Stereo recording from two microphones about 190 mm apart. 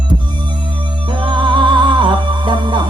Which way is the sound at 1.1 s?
25° right (ahead or behind).